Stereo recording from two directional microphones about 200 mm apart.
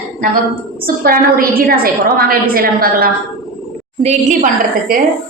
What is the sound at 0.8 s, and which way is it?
A woman's voice, 45° right (ahead or behind).